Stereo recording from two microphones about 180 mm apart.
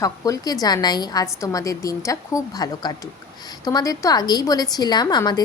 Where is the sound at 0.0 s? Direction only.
20° left (ahead or behind).